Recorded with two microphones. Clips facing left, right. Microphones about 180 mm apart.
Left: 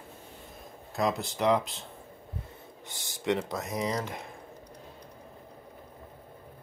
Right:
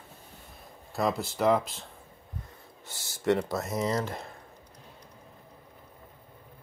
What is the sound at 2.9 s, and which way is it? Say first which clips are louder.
Speech: right 3 dB; 15° left (ahead or behind).